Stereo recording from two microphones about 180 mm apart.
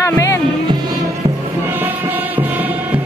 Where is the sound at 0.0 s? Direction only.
15° left (ahead or behind).